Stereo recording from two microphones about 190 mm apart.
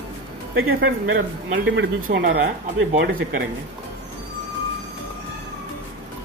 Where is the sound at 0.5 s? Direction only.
90° right.